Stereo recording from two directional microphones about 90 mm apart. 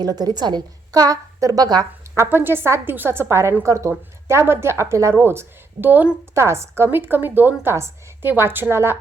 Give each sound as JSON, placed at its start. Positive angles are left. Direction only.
{"t": 0.0, "sound": "a woman's voice", "side_deg": -50}
{"t": 2.1, "sound": "a woman's voice", "side_deg": -25}
{"t": 6.3, "sound": "a woman's voice", "side_deg": -30}